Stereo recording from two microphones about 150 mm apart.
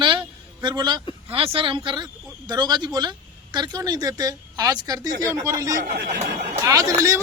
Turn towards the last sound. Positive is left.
turn(degrees=-25)  # may be behind; listen again after turning